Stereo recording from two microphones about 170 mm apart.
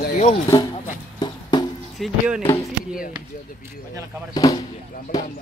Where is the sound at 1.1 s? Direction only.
25° left (ahead or behind).